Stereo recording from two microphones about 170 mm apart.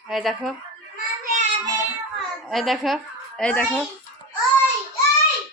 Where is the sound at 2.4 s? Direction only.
Centre (ahead or behind).